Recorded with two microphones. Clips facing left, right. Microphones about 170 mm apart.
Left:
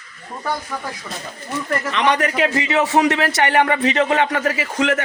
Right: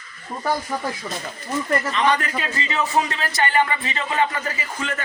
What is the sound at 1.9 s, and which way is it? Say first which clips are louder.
A man's voice: left 6 dB; 70° left (ahead or behind).